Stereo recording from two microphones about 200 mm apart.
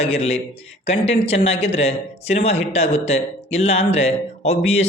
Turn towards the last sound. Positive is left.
turn(degrees=30)  # may be behind; listen again after turning